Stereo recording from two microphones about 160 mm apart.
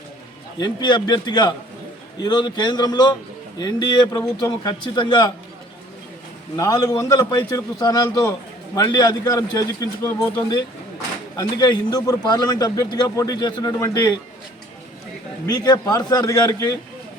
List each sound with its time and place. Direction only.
0.6 s a man's voice: 30° left (ahead or behind)
6.6 s a man's voice: 25° left (ahead or behind)
11.3 s a man's voice: 25° left (ahead or behind)
15.4 s a man's voice: 25° left (ahead or behind)